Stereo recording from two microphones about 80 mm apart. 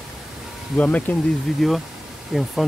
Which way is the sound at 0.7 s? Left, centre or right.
Centre.